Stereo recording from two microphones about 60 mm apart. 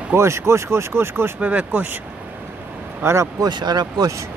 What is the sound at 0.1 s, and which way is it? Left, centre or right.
Speech, right.